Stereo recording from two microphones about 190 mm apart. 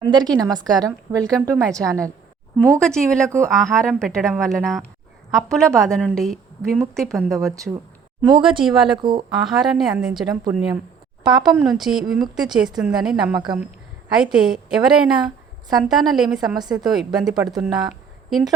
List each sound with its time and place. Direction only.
0.0 s a woman's voice: 20° right (ahead or behind)
2.8 s a woman's voice: 5° left (ahead or behind)
3.2 s a woman's voice: 15° right (ahead or behind)
3.5 s a woman's voice: centre (ahead or behind)
8.2 s a woman's voice: 25° right (ahead or behind)
8.6 s a woman's voice: centre (ahead or behind)
9.0 s a woman's voice: 25° right (ahead or behind)
9.3 s a woman's voice: centre (ahead or behind)
14.3 s a woman's voice: 5° right (ahead or behind)